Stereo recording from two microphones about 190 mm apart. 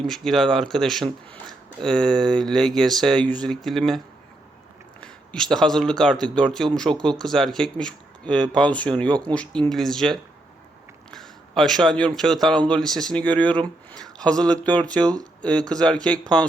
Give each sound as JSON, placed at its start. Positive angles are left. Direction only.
{"t": 0.1, "sound": "speech", "side_deg": 0}
{"t": 15.0, "sound": "speech", "side_deg": -20}
{"t": 15.4, "sound": "speech", "side_deg": 5}